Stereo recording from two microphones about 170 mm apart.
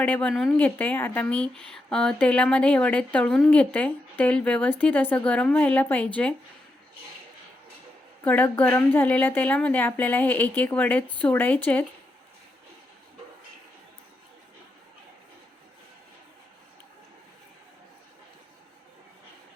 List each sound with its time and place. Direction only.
0.0 s a woman's voice: 10° left (ahead or behind)
8.2 s a woman's voice: 10° left (ahead or behind)